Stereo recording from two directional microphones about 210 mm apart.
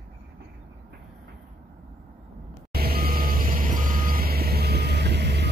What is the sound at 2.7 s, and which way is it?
Reversing beeps, 45° right (ahead or behind).